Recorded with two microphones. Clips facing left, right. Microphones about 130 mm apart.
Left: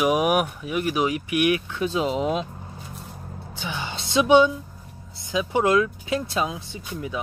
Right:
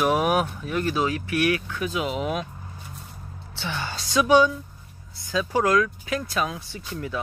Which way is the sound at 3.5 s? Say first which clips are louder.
Right 1 dB; 15° left (ahead or behind).